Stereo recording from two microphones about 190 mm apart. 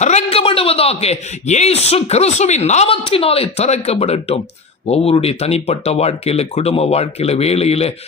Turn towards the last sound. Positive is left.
turn(degrees=35)  # may be behind; listen again after turning